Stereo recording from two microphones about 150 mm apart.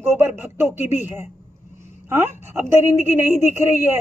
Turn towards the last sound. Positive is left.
turn(degrees=-15)  # may be behind; listen again after turning